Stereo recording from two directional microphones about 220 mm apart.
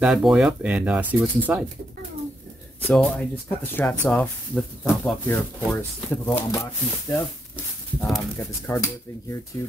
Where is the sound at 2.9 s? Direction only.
5° left (ahead or behind).